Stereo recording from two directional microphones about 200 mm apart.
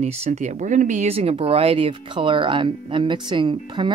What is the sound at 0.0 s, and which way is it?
Speech, 30° right (ahead or behind).